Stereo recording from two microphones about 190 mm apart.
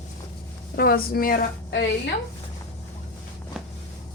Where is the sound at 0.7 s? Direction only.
55° left (ahead or behind).